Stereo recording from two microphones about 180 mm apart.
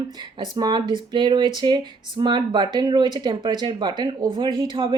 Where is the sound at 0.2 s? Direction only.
25° right (ahead or behind).